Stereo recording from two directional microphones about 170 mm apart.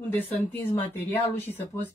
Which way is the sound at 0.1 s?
10° left (ahead or behind).